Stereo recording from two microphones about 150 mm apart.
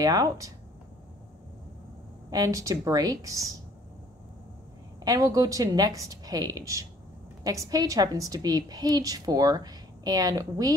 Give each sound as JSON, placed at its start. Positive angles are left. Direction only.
{"t": 0.0, "sound": "a woman's voice", "side_deg": -25}
{"t": 2.3, "sound": "a woman's voice", "side_deg": -25}
{"t": 5.0, "sound": "a woman's voice", "side_deg": -25}